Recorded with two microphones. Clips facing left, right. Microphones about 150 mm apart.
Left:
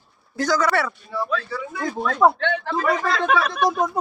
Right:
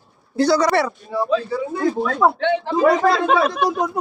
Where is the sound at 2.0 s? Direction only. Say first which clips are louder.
Left 3 dB; 5° right (ahead or behind).